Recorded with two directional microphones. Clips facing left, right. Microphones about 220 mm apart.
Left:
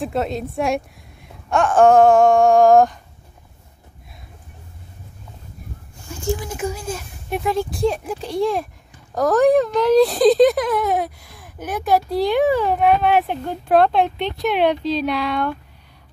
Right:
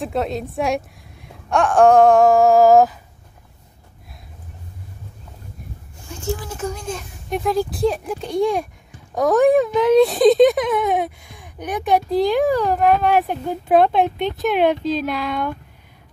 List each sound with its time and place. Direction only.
0.0 s speech: centre (ahead or behind)
6.1 s speech: 5° left (ahead or behind)
14.8 s speech: 45° right (ahead or behind)
15.0 s speech: centre (ahead or behind)